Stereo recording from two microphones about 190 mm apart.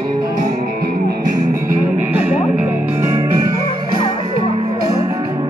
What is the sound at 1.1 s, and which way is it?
Music, 50° right (ahead or behind).